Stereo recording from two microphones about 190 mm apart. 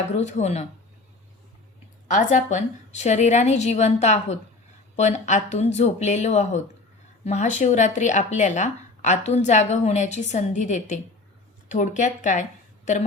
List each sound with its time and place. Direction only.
0.2 s speech: 35° left (ahead or behind)
2.0 s a woman's voice: 40° left (ahead or behind)